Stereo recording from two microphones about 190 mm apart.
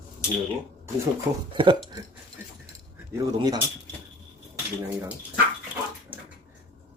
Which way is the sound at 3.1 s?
20° right (ahead or behind).